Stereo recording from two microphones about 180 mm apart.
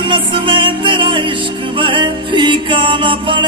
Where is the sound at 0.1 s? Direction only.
30° right (ahead or behind).